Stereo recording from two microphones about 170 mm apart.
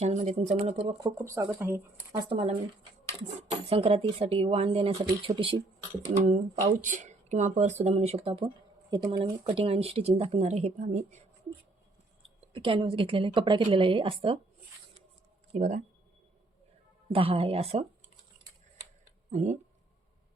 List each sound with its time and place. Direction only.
0.0 s speech: 40° right (ahead or behind)
0.9 s speech: 20° right (ahead or behind)
2.3 s speech: 30° right (ahead or behind)
6.8 s speech: 45° right (ahead or behind)
12.5 s speech: 30° right (ahead or behind)
15.5 s speech: 50° right (ahead or behind)
17.1 s speech: 35° right (ahead or behind)
19.3 s speech: 45° right (ahead or behind)